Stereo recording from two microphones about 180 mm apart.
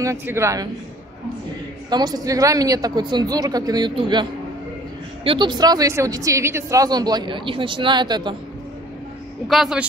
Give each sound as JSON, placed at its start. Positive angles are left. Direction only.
{"t": 0.0, "sound": "speech", "side_deg": -15}
{"t": 1.9, "sound": "speech", "side_deg": -20}
{"t": 9.5, "sound": "a man's voice", "side_deg": -5}